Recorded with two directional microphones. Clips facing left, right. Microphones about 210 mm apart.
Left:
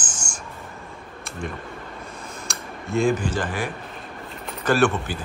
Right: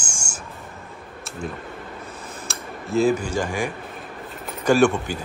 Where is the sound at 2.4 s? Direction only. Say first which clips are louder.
Right 2 dB; centre (ahead or behind).